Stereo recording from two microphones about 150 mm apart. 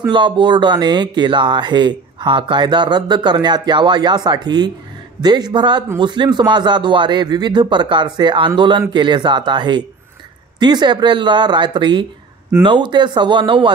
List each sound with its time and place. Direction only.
0.1 s a man's voice: 30° right (ahead or behind)